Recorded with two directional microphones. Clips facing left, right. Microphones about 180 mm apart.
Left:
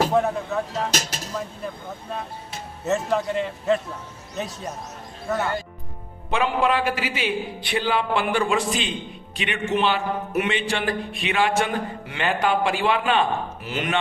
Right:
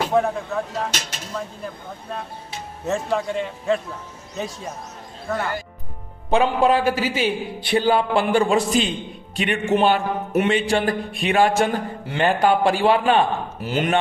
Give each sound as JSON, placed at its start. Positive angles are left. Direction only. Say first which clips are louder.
{"t": 0.1, "sound": "a man's voice", "louder": "right 1 dB", "side_deg": 5}
{"t": 6.3, "sound": "a man's voice", "louder": "right 4 dB", "side_deg": -35}